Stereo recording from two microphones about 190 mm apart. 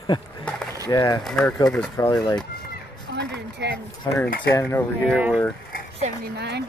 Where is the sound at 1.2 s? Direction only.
5° left (ahead or behind).